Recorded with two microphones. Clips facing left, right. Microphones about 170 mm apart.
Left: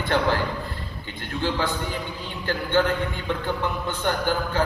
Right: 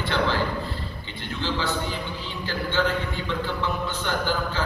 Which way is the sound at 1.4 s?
50° left (ahead or behind).